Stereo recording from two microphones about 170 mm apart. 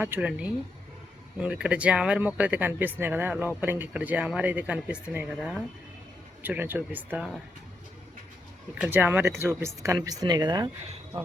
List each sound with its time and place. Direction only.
0.0 s speech: 10° right (ahead or behind)
8.8 s speech: 10° right (ahead or behind)